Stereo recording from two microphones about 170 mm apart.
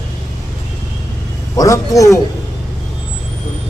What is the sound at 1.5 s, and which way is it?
Speech, 20° left (ahead or behind).